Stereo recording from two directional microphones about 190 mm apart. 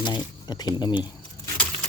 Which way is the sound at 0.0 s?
20° left (ahead or behind).